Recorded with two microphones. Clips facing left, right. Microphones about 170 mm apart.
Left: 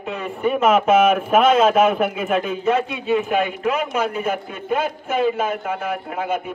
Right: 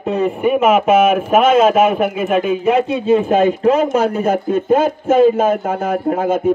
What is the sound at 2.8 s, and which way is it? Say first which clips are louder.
Speech: right 7 dB; 35° right (ahead or behind).